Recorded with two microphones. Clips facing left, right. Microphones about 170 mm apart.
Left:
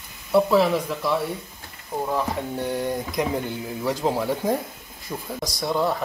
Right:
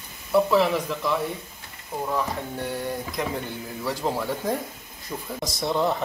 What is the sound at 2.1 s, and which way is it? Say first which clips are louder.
Speech: left 2 dB; 15° left (ahead or behind).